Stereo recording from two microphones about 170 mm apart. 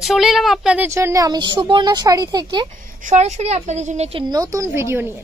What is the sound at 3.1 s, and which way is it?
A woman's voice, 45° right (ahead or behind).